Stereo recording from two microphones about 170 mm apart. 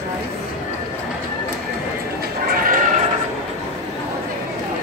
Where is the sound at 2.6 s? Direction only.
55° right (ahead or behind).